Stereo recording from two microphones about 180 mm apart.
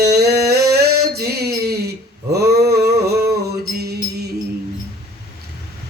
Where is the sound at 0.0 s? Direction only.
65° right (ahead or behind).